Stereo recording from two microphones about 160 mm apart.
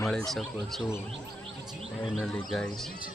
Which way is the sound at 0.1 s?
Centre (ahead or behind).